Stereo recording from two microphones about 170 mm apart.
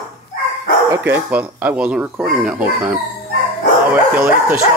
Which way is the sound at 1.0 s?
10° right (ahead or behind).